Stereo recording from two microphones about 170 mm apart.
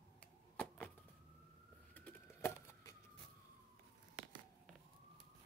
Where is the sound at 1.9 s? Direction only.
10° left (ahead or behind).